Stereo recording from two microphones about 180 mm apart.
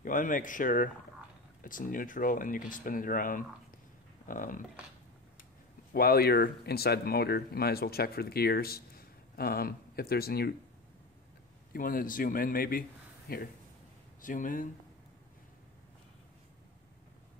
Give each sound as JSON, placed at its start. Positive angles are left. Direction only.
{"t": 0.0, "sound": "speech", "side_deg": 45}
{"t": 5.9, "sound": "speech", "side_deg": 60}
{"t": 11.7, "sound": "speech", "side_deg": 50}